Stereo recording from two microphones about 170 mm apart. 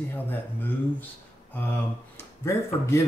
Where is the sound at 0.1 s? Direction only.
10° left (ahead or behind).